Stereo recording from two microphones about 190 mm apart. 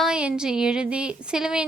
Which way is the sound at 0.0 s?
5° right (ahead or behind).